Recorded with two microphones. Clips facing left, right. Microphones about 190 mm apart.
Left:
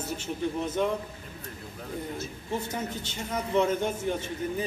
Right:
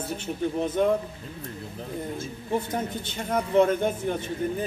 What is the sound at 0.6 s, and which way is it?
Speech, 55° right (ahead or behind).